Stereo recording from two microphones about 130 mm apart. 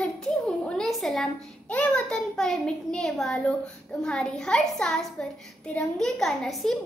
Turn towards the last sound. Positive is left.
turn(degrees=0)  # may be behind; listen again after turning